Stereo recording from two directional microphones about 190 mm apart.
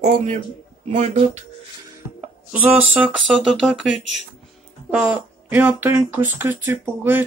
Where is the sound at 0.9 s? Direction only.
35° right (ahead or behind).